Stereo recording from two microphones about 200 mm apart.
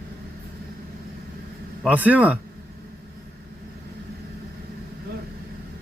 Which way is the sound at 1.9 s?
10° right (ahead or behind).